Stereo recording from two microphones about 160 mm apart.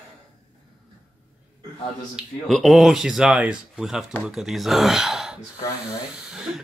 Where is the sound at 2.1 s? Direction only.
Centre (ahead or behind).